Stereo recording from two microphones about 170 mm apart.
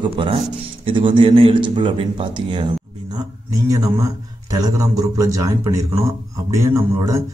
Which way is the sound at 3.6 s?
20° right (ahead or behind).